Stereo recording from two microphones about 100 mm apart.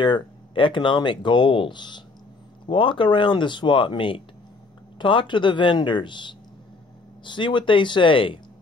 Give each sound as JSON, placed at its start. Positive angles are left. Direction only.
{"t": 0.0, "sound": "speech", "side_deg": 55}